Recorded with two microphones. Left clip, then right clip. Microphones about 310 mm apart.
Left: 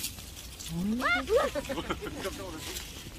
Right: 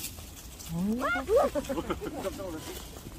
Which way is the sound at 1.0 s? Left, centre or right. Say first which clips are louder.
Right 1 dB; right.